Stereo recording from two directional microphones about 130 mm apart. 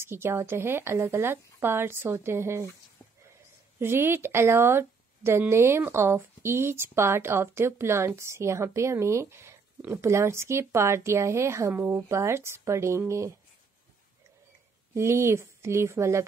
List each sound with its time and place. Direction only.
0.0 s a woman's voice: 20° right (ahead or behind)
3.8 s a woman's voice: 20° right (ahead or behind)
15.0 s a woman's voice: 20° right (ahead or behind)